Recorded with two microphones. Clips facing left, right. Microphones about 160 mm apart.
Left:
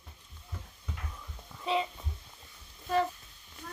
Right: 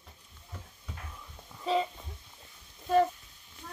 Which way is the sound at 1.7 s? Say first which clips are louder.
Right 2 dB; 40° right (ahead or behind).